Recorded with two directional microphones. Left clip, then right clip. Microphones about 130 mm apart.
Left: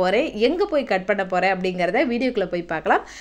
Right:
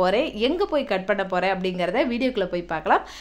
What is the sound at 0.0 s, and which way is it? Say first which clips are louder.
A woman's voice: left 2 dB; 5° left (ahead or behind).